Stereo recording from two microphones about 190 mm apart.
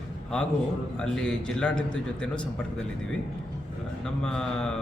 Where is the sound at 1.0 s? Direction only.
5° left (ahead or behind).